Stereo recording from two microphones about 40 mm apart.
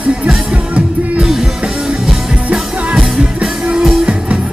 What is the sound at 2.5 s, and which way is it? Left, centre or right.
Music, right.